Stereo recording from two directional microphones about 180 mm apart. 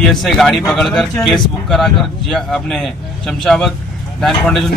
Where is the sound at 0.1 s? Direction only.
Centre (ahead or behind).